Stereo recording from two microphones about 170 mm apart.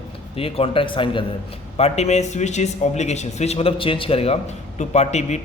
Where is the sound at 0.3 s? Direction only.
35° left (ahead or behind).